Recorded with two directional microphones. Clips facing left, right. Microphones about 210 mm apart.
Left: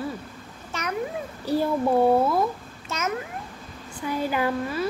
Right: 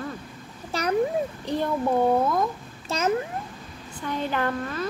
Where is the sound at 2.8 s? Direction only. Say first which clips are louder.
Right 5 dB; 30° right (ahead or behind).